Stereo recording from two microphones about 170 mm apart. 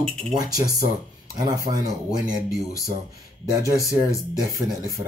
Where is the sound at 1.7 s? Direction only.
35° right (ahead or behind).